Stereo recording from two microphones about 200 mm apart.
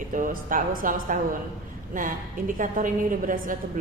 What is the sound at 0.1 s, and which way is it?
A woman's voice, 40° right (ahead or behind).